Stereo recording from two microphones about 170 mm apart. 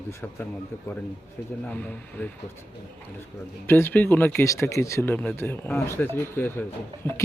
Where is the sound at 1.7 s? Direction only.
10° left (ahead or behind).